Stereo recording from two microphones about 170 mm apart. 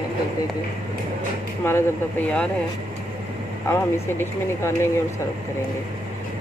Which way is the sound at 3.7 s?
15° left (ahead or behind).